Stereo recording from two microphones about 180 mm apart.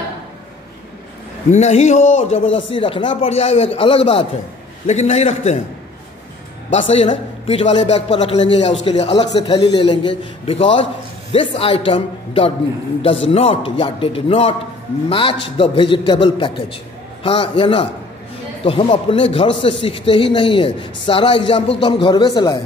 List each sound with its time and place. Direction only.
1.5 s a man's voice: 40° left (ahead or behind)
6.7 s a woman's voice: 35° left (ahead or behind)